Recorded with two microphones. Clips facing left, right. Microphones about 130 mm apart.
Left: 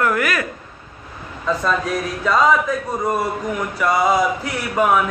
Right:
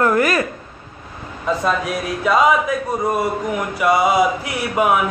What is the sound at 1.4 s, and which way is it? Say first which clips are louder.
A man's voice: right 1 dB; 15° right (ahead or behind).